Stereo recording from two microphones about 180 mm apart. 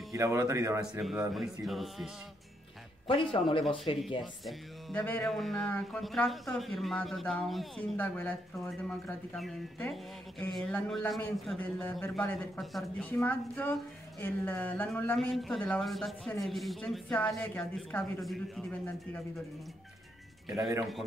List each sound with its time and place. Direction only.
0.1 s speech: 15° right (ahead or behind)
0.8 s speech: 5° right (ahead or behind)
3.3 s speech: 30° left (ahead or behind)
3.6 s speech: centre (ahead or behind)
5.0 s a man's voice: 10° left (ahead or behind)